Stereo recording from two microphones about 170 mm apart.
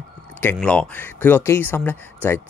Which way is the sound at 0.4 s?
10° left (ahead or behind).